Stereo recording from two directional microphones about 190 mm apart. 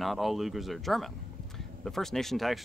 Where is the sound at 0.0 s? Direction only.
Centre (ahead or behind).